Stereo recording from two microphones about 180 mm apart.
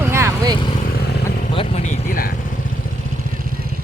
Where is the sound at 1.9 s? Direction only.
50° left (ahead or behind).